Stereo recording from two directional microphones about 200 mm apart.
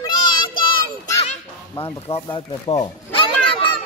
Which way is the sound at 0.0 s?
25° left (ahead or behind).